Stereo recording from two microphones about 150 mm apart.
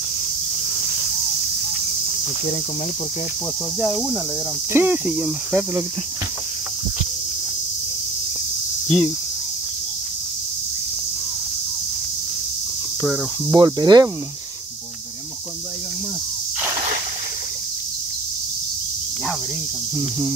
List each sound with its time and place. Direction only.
3.8 s speech: centre (ahead or behind)
8.8 s speech: 5° left (ahead or behind)
13.5 s speech: 25° right (ahead or behind)
20.0 s speech: 25° right (ahead or behind)